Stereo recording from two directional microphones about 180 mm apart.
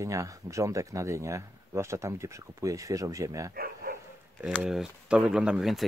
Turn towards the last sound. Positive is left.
turn(degrees=0)  # may be behind; listen again after turning